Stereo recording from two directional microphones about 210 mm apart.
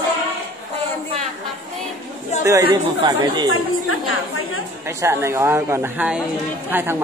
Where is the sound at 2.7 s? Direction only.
20° right (ahead or behind).